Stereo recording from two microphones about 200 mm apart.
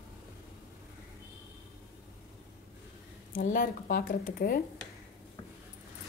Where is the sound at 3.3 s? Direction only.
45° left (ahead or behind).